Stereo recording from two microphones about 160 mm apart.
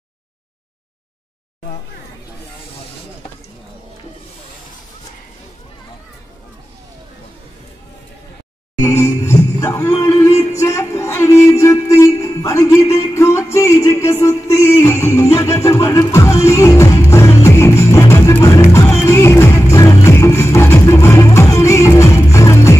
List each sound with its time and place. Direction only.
8.8 s music: 15° left (ahead or behind)